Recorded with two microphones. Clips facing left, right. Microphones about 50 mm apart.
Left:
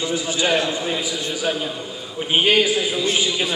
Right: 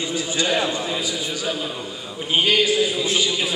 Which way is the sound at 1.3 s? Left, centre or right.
Left.